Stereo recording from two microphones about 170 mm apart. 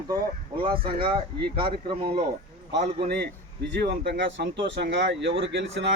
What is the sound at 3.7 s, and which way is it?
Speech, 85° right.